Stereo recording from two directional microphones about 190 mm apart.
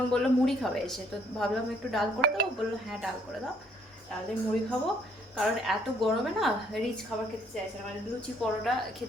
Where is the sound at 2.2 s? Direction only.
55° right (ahead or behind).